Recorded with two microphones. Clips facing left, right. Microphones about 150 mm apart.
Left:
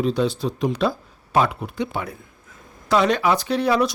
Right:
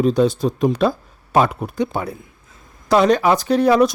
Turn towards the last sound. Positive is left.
turn(degrees=-45)  # may be behind; listen again after turning